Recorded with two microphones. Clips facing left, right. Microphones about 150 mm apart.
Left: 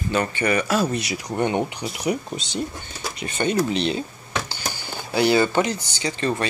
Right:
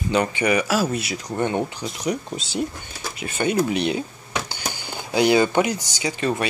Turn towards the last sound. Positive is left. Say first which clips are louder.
# right 1 dB
turn(degrees=-10)  # may be behind; listen again after turning